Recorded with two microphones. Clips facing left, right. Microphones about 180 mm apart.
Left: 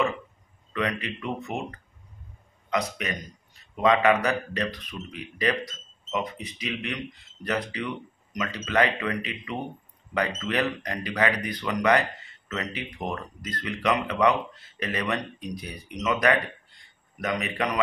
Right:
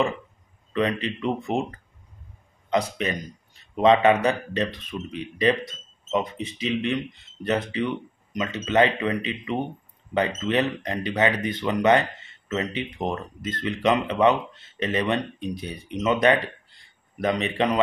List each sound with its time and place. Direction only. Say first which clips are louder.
0.7 s speech: right 5 dB; 30° right (ahead or behind)